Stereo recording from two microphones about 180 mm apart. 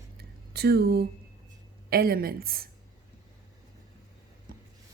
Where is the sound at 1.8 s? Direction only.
55° right (ahead or behind).